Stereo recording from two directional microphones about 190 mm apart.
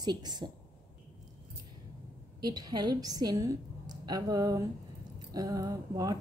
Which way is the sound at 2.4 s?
20° right (ahead or behind).